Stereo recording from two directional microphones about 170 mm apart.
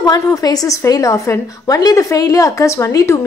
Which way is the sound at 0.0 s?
20° left (ahead or behind).